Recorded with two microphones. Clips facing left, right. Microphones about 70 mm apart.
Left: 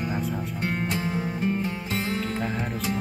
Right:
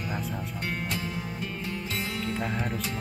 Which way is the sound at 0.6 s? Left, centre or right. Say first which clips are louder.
Left 5 dB; left.